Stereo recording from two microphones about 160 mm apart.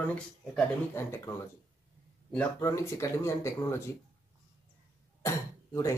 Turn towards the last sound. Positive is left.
turn(degrees=20)  # may be behind; listen again after turning